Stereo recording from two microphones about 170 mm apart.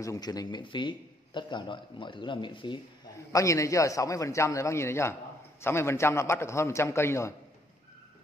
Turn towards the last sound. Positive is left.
turn(degrees=15)  # may be behind; listen again after turning